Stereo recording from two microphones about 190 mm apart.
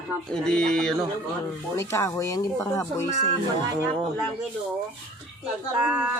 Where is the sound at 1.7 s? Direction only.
15° left (ahead or behind).